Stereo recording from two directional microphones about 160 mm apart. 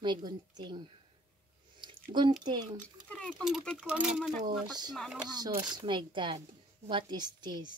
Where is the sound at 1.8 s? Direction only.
30° right (ahead or behind).